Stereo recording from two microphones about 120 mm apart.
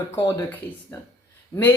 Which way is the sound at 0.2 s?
20° left (ahead or behind).